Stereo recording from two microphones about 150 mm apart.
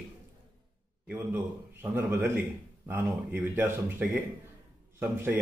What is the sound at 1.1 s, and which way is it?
A man's voice, 15° right (ahead or behind).